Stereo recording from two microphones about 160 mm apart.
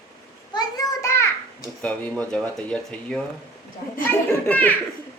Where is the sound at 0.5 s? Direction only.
25° left (ahead or behind).